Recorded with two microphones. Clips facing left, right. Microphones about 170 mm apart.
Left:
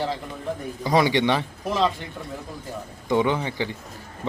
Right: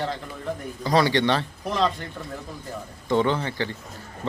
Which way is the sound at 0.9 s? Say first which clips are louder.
Left 1 dB; 15° left (ahead or behind).